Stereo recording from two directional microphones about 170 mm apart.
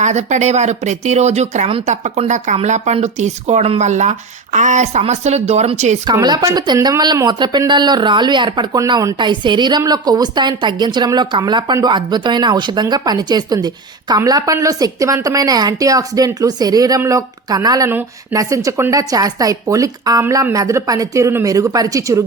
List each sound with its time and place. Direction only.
0.0 s speech: 45° right (ahead or behind)
6.1 s speech: 25° right (ahead or behind)